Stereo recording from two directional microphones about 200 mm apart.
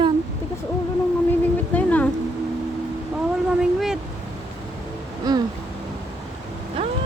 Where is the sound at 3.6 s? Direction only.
5° right (ahead or behind).